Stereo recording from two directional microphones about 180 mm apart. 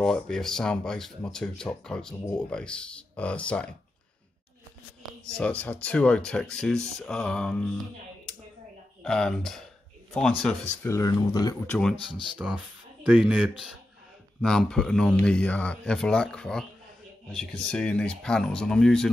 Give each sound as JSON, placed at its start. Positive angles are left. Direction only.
{"t": 0.0, "sound": "speech", "side_deg": 5}
{"t": 5.4, "sound": "speech", "side_deg": 5}
{"t": 9.0, "sound": "speech", "side_deg": 5}
{"t": 10.8, "sound": "speech", "side_deg": 20}
{"t": 12.4, "sound": "speech", "side_deg": -5}